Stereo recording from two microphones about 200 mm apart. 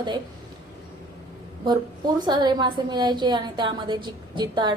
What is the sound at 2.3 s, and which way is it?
Female singing, 20° right (ahead or behind).